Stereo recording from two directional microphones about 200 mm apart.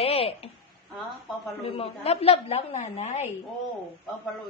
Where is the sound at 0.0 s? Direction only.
30° left (ahead or behind).